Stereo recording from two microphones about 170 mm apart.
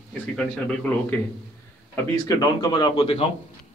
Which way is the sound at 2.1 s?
20° left (ahead or behind).